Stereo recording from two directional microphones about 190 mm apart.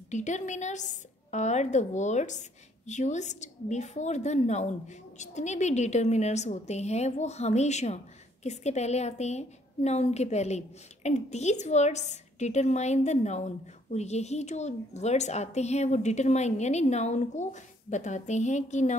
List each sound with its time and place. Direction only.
0.1 s a woman's voice: 40° left (ahead or behind)